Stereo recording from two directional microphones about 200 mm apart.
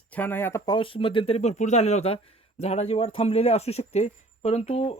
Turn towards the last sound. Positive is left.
turn(degrees=30)  # may be behind; listen again after turning